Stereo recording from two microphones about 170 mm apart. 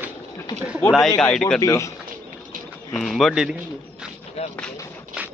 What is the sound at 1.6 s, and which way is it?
Speech, 20° left (ahead or behind).